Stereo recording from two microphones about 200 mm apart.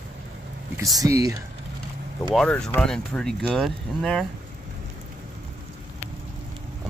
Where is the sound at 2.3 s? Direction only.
5° left (ahead or behind).